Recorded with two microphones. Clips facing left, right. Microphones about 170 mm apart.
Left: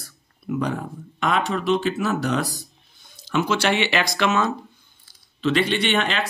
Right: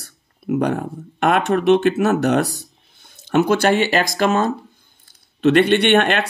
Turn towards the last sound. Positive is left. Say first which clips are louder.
# right 7 dB
turn(degrees=-55)  # may be behind; listen again after turning